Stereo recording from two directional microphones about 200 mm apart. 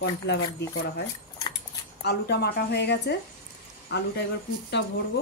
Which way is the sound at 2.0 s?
55° left (ahead or behind).